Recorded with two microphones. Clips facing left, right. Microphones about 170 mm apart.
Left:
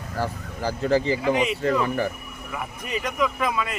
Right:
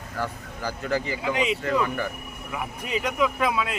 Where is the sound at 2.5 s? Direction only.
10° right (ahead or behind).